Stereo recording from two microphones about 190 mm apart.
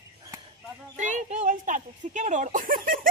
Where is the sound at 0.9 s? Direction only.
40° right (ahead or behind).